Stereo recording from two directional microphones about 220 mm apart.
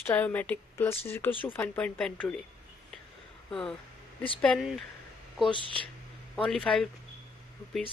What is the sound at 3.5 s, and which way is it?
A woman's voice, centre (ahead or behind).